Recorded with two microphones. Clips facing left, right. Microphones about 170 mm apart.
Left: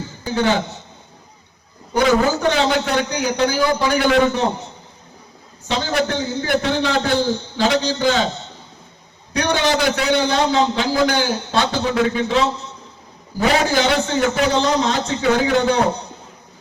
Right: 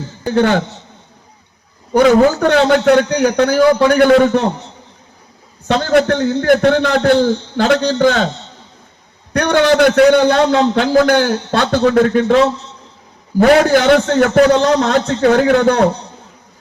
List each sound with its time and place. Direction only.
0.3 s a man's voice: 55° right (ahead or behind)
1.9 s a man's voice: 60° right (ahead or behind)
5.6 s a man's voice: 55° right (ahead or behind)
9.3 s a man's voice: 55° right (ahead or behind)
13.4 s a man's voice: 55° right (ahead or behind)